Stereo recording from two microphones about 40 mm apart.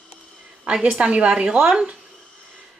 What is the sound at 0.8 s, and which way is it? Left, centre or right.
A woman's voice, right.